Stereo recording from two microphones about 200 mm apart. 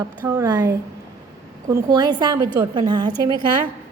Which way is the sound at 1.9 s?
20° right (ahead or behind).